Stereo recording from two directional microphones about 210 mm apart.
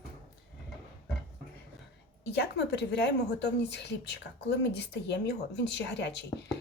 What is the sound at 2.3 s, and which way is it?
A woman's voice, 55° left (ahead or behind).